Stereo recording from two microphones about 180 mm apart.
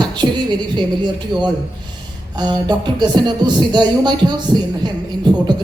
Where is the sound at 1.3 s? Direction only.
25° right (ahead or behind).